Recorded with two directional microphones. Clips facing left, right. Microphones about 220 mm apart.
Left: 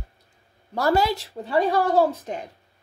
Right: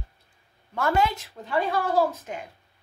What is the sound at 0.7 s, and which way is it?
Speech, 35° left (ahead or behind).